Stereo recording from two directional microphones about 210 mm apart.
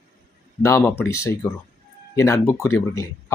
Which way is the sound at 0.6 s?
10° left (ahead or behind).